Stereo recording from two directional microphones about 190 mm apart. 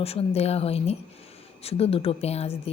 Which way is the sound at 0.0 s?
30° left (ahead or behind).